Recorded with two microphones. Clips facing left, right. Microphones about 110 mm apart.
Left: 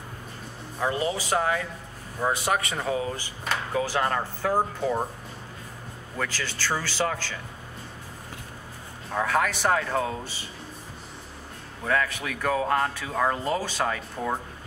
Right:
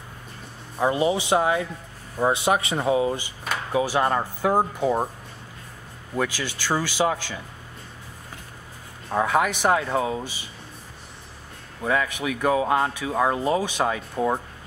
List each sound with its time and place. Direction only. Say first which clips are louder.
0.9 s speech: right 5 dB; 20° right (ahead or behind)
6.1 s speech: right 5 dB; 15° right (ahead or behind)
9.1 s speech: right 3 dB; 20° right (ahead or behind)
11.8 s speech: right 2 dB; 15° right (ahead or behind)